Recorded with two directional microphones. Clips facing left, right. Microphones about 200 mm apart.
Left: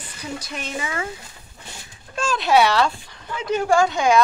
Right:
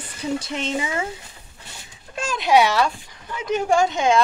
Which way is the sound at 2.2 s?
15° right (ahead or behind).